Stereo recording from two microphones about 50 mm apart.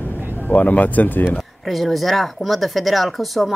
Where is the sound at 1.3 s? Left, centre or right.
Centre.